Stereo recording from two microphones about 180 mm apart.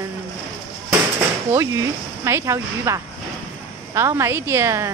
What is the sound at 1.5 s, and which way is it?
A woman's voice, 15° right (ahead or behind).